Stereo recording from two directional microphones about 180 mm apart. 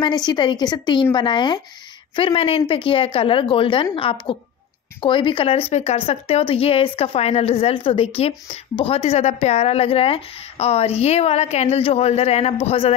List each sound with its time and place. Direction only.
0.0 s a woman's voice: 25° left (ahead or behind)